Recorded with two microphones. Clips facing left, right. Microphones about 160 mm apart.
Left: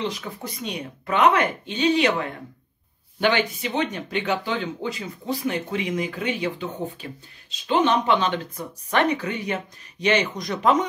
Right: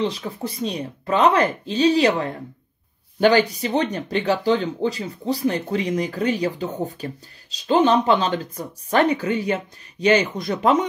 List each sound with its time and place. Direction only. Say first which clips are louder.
0.0 s speech: right 5 dB; 30° right (ahead or behind)